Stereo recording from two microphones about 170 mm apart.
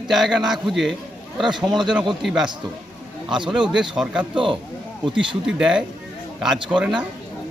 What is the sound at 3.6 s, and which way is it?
Speech, 5° right (ahead or behind).